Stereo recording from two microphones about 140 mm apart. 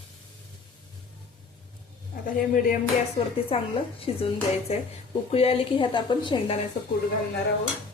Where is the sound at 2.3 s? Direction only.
75° left (ahead or behind).